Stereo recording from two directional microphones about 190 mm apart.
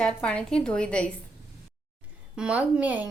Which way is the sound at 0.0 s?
5° left (ahead or behind).